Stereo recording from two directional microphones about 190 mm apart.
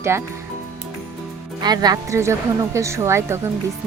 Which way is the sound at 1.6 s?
20° right (ahead or behind).